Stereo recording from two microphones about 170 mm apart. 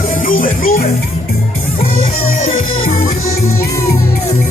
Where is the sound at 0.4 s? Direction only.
50° left (ahead or behind).